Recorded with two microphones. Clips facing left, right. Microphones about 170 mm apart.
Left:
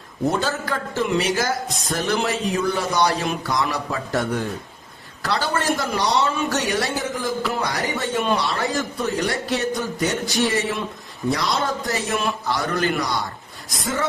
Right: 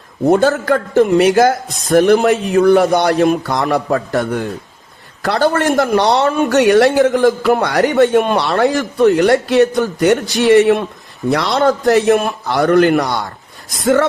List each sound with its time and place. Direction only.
0.3 s a man's voice: 60° right (ahead or behind)
13.8 s a man's voice: 75° right (ahead or behind)